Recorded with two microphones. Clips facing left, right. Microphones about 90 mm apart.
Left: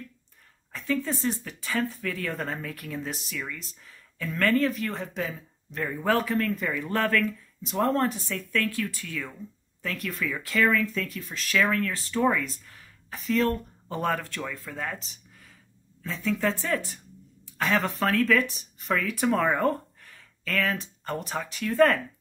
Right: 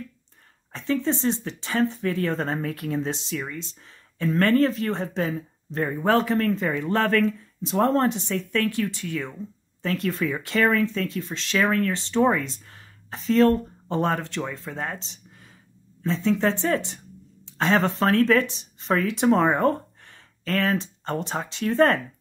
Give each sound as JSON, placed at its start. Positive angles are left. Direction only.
{"t": 0.7, "sound": "speech", "side_deg": -25}